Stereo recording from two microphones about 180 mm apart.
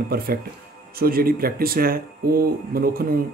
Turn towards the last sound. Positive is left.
turn(degrees=-55)  # may be behind; listen again after turning